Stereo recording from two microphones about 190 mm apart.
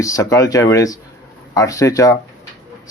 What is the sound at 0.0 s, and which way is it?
Speech, 15° left (ahead or behind).